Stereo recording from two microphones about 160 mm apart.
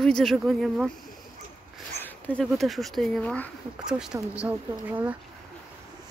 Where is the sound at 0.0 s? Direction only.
Centre (ahead or behind).